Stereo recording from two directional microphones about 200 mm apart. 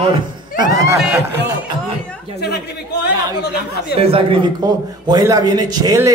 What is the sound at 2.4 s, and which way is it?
Speech, 55° left (ahead or behind).